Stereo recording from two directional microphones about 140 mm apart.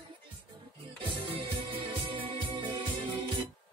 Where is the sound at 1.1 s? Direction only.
40° right (ahead or behind).